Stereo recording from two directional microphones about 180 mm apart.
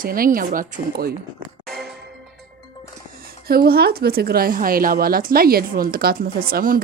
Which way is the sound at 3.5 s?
60° right (ahead or behind).